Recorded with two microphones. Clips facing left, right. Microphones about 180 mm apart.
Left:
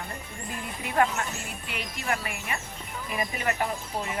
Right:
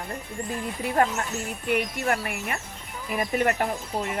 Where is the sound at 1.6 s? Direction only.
55° right (ahead or behind).